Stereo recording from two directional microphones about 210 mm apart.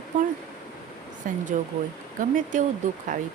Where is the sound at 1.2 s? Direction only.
40° right (ahead or behind).